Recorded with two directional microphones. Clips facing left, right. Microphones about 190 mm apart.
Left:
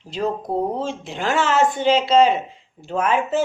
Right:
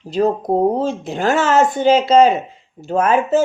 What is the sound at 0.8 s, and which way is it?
Speech, 40° right (ahead or behind).